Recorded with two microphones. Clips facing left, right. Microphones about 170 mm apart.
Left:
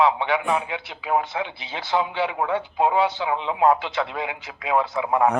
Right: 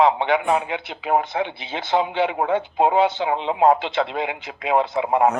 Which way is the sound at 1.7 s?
25° right (ahead or behind).